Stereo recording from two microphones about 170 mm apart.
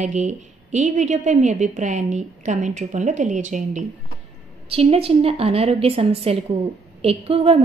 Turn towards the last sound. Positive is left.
turn(degrees=-35)  # may be behind; listen again after turning